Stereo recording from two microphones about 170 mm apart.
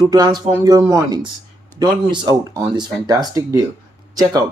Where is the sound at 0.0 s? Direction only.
25° right (ahead or behind).